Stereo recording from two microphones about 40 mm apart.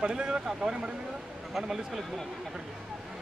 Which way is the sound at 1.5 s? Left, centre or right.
Centre.